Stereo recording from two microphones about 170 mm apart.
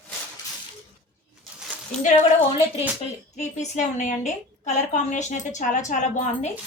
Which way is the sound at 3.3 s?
45° left (ahead or behind).